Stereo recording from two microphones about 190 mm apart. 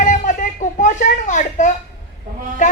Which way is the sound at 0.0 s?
40° left (ahead or behind).